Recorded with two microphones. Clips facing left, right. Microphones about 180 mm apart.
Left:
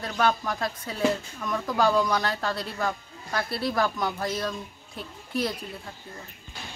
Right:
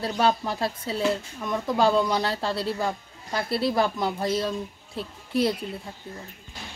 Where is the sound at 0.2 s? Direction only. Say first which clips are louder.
Right 1 dB; 25° right (ahead or behind).